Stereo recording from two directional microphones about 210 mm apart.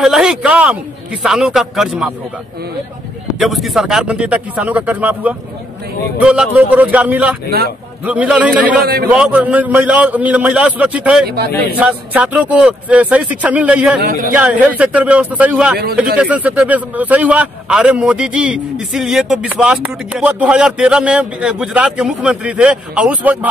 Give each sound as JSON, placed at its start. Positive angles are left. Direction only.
{"t": 0.0, "sound": "a man's voice", "side_deg": 0}
{"t": 3.3, "sound": "a man's voice", "side_deg": 0}
{"t": 8.6, "sound": "a man's voice", "side_deg": -45}
{"t": 9.1, "sound": "a man's voice", "side_deg": -5}
{"t": 11.2, "sound": "a man's voice", "side_deg": -50}
{"t": 11.8, "sound": "a man's voice", "side_deg": -5}